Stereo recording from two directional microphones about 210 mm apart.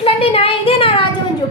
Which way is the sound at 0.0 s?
25° left (ahead or behind).